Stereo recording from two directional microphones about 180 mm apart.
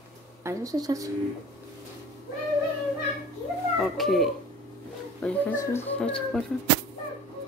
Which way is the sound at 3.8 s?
Centre (ahead or behind).